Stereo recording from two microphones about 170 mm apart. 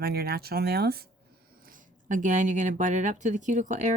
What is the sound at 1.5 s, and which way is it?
Speech, 55° right (ahead or behind).